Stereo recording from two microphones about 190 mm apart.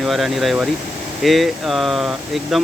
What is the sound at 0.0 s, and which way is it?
Speech, centre (ahead or behind).